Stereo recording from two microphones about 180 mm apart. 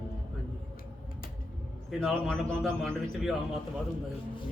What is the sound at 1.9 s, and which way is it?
A man's voice, centre (ahead or behind).